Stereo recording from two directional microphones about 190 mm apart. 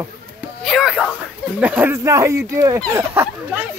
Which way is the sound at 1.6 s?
10° right (ahead or behind).